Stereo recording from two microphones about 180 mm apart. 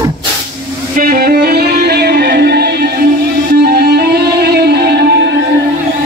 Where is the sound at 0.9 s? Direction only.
55° right (ahead or behind); by 5.4 s 70° right (ahead or behind).